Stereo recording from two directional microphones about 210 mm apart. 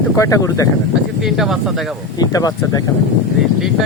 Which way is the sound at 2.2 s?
15° left (ahead or behind).